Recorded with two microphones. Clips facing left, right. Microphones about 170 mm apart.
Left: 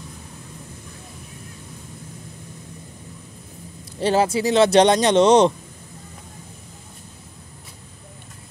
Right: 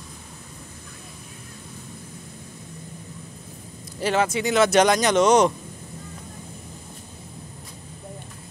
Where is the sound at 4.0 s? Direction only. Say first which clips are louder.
Left 3 dB; 30° left (ahead or behind).